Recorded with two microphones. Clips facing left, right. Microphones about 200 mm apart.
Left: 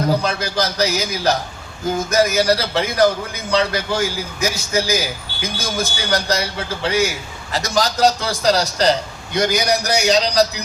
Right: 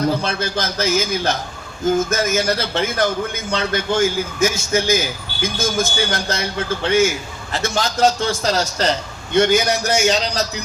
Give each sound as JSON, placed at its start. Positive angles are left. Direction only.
{"t": 0.2, "sound": "a man's voice", "side_deg": 40}